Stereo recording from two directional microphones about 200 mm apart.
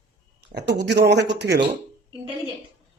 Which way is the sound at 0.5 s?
55° right (ahead or behind).